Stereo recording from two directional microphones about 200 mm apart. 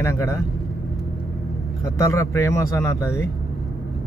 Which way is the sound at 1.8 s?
15° left (ahead or behind).